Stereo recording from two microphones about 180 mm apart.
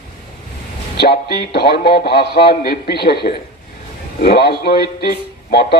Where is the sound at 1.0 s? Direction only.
60° left (ahead or behind).